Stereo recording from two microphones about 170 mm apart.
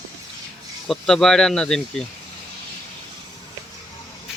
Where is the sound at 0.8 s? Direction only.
5° left (ahead or behind).